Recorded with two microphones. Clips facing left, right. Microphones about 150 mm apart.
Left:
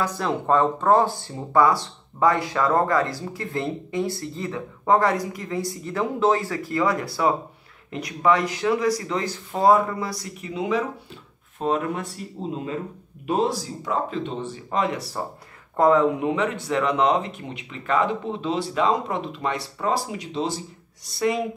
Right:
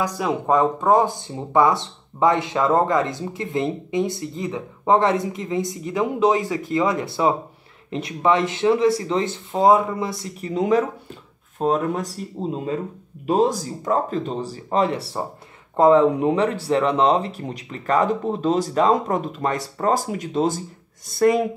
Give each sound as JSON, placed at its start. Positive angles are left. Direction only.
{"t": 0.0, "sound": "speech", "side_deg": -15}
{"t": 10.5, "sound": "speech", "side_deg": -45}
{"t": 11.9, "sound": "speech", "side_deg": -40}